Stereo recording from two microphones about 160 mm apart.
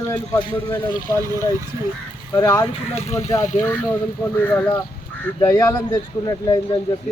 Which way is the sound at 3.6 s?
10° left (ahead or behind).